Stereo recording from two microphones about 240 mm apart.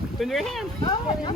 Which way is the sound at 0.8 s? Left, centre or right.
Centre.